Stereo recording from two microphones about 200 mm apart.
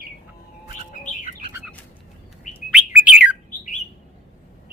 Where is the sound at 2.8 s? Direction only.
5° right (ahead or behind).